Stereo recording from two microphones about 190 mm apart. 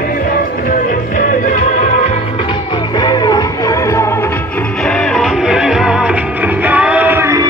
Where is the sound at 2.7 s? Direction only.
25° left (ahead or behind).